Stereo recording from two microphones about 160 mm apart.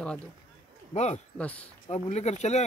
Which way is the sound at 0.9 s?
45° left (ahead or behind).